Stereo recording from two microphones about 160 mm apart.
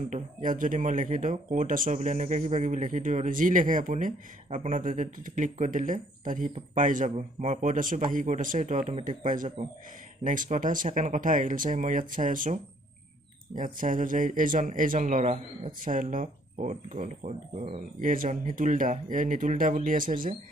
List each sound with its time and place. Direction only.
0.1 s speech: 55° right (ahead or behind)
13.6 s speech: 55° right (ahead or behind)